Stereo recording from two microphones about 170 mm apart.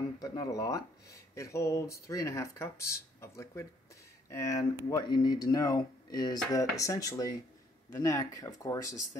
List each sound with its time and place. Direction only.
0.2 s speech: 20° left (ahead or behind)